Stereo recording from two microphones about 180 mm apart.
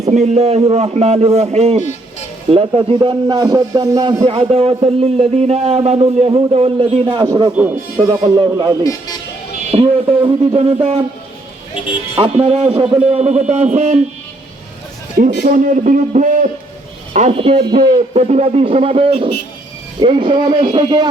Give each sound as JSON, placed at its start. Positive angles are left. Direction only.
{"t": 0.1, "sound": "a man's voice", "side_deg": -35}
{"t": 8.8, "sound": "speech", "side_deg": 20}
{"t": 9.7, "sound": "a man's voice", "side_deg": -35}
{"t": 12.1, "sound": "a man's voice", "side_deg": -30}
{"t": 15.2, "sound": "a man's voice", "side_deg": -45}